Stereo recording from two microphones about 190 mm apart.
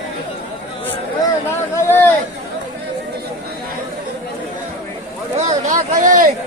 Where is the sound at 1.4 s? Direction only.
15° left (ahead or behind).